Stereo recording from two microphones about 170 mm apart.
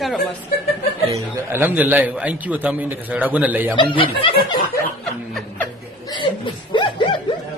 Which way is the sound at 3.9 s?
30° left (ahead or behind).